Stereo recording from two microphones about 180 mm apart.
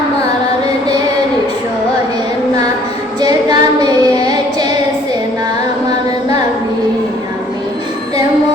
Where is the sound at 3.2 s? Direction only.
25° right (ahead or behind).